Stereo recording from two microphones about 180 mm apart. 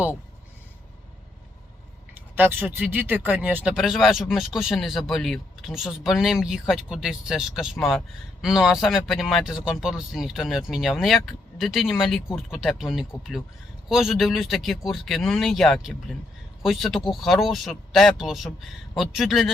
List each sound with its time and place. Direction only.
2.3 s speech: 10° right (ahead or behind)